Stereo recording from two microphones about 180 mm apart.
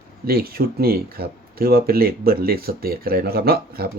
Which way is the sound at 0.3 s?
60° right (ahead or behind).